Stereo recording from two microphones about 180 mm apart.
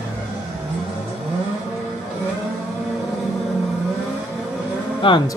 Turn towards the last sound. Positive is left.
turn(degrees=30)  # may be behind; listen again after turning